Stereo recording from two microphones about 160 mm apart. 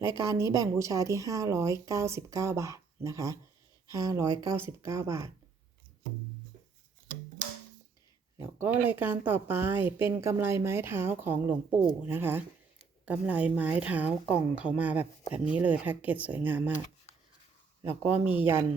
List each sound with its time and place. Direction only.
0.3 s speech: 20° right (ahead or behind)
8.4 s speech: 10° right (ahead or behind)
18.3 s speech: 15° right (ahead or behind)